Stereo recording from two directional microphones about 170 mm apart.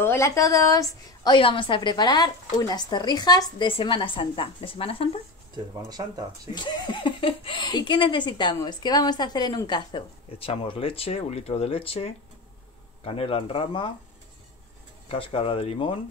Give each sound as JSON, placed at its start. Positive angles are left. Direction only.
{"t": 0.0, "sound": "speech", "side_deg": 15}
{"t": 5.5, "sound": "speech", "side_deg": -20}
{"t": 6.5, "sound": "speech", "side_deg": 25}
{"t": 15.0, "sound": "speech", "side_deg": 30}